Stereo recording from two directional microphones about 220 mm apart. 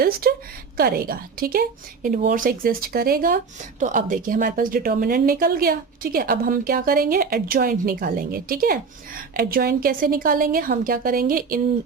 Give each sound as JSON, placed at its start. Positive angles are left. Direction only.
{"t": 0.0, "sound": "speech", "side_deg": -40}